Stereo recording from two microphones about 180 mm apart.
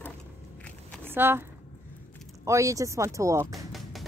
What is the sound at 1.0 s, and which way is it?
Speech, 10° right (ahead or behind).